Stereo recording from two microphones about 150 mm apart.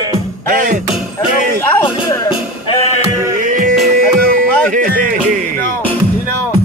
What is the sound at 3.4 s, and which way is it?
Music, 65° right (ahead or behind).